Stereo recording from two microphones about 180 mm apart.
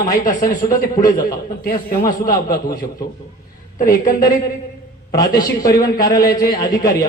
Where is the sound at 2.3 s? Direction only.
20° left (ahead or behind).